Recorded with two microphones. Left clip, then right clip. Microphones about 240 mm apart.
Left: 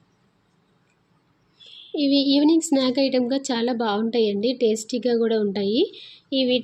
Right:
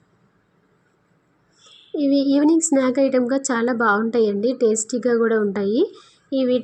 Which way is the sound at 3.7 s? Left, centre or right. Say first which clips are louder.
Right 6 dB; centre.